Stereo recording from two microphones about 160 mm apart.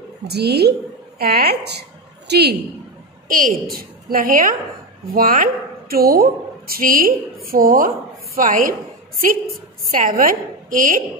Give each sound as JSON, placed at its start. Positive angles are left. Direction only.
{"t": 0.3, "sound": "a woman's voice", "side_deg": -90}
{"t": 3.3, "sound": "a woman's voice", "side_deg": -65}
{"t": 9.8, "sound": "a woman's voice", "side_deg": -55}